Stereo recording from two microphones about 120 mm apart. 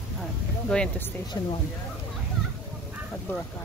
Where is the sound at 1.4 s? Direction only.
35° left (ahead or behind).